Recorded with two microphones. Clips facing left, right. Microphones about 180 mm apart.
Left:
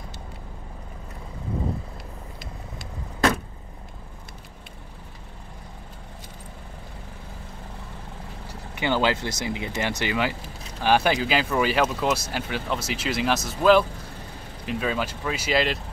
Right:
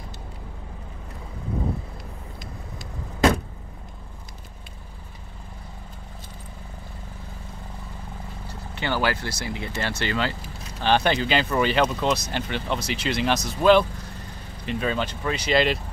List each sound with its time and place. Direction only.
8.7 s speech: 15° left (ahead or behind); by 15.8 s centre (ahead or behind)